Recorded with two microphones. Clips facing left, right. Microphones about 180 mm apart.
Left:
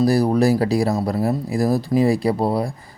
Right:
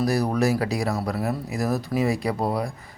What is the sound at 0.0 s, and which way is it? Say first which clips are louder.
Speech: left 6 dB; 30° left (ahead or behind).